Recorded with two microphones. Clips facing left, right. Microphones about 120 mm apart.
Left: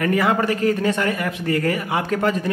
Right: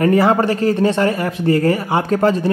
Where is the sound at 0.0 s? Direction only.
30° right (ahead or behind).